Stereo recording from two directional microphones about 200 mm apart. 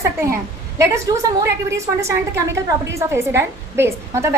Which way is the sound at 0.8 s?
15° right (ahead or behind).